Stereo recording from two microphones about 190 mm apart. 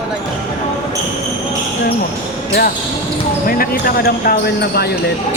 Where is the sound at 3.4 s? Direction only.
50° left (ahead or behind).